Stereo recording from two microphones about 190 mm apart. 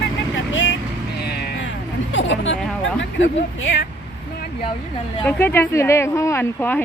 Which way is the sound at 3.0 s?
75° left (ahead or behind).